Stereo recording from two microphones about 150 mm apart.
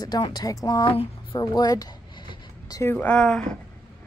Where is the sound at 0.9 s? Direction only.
35° left (ahead or behind).